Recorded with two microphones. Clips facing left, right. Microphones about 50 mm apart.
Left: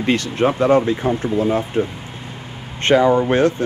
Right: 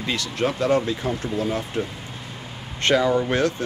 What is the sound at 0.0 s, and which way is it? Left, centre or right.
Speech, left.